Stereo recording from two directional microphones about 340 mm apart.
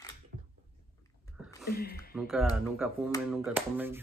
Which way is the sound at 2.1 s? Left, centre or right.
Centre.